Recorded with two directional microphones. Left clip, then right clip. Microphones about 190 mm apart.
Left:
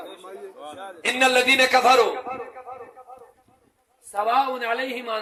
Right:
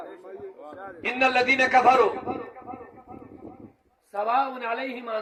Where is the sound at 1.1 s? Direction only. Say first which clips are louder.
Left 3 dB; 45° left (ahead or behind).